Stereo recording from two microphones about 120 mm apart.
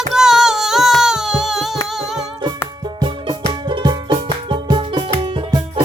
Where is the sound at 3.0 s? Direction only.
40° right (ahead or behind).